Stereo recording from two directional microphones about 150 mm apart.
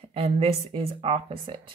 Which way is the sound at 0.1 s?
40° right (ahead or behind).